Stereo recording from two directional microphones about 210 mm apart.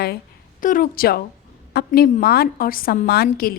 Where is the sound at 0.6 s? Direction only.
40° left (ahead or behind).